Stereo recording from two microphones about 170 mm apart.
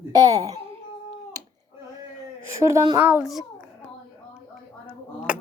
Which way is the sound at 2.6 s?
20° right (ahead or behind).